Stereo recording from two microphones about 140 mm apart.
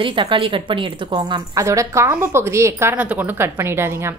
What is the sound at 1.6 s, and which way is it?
A woman's voice, 20° right (ahead or behind).